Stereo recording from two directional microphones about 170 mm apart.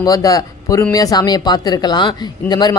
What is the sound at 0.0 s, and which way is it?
Speech, 20° left (ahead or behind).